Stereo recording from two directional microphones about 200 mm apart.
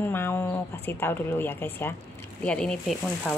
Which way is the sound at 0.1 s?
10° left (ahead or behind).